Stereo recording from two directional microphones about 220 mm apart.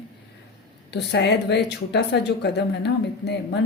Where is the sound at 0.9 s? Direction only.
50° left (ahead or behind).